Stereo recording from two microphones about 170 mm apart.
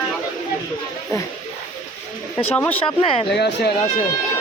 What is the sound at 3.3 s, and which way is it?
Speech, 80° left.